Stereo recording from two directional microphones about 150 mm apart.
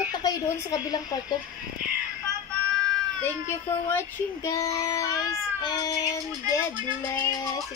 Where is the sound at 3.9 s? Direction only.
20° left (ahead or behind).